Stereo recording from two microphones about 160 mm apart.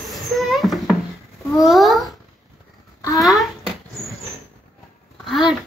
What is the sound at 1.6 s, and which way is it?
Babbling, centre (ahead or behind).